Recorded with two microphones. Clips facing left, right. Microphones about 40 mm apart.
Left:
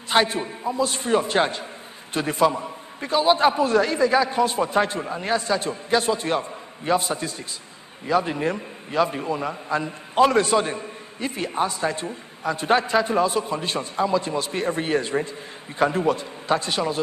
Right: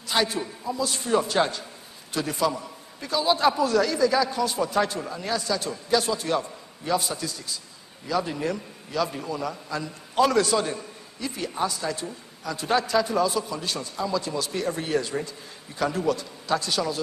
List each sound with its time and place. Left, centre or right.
0.1 s a man's voice: left